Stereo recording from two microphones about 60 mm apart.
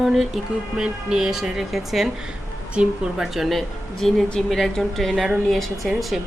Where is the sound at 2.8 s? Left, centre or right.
Centre.